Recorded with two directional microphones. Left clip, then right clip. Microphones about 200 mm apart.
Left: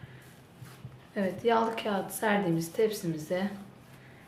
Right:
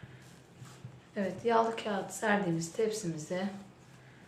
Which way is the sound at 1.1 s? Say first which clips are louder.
Left 2 dB; 35° left (ahead or behind).